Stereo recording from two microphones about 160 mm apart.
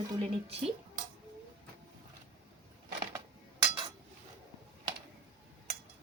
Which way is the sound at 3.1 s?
30° right (ahead or behind).